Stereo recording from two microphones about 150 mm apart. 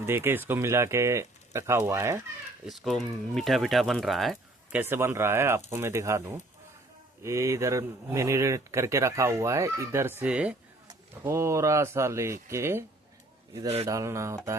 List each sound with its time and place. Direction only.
0.0 s speech: 15° right (ahead or behind)
2.6 s speech: centre (ahead or behind)
4.8 s speech: 15° right (ahead or behind)
10.8 s speech: 20° right (ahead or behind)
13.8 s speech: 20° right (ahead or behind)